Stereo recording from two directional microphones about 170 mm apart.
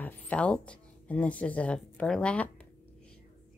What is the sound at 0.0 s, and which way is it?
Speech, 5° left (ahead or behind).